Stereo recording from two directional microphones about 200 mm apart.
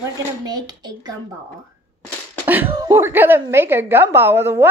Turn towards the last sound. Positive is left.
turn(degrees=-10)  # may be behind; listen again after turning